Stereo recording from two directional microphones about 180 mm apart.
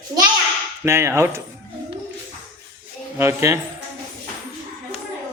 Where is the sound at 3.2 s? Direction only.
15° right (ahead or behind).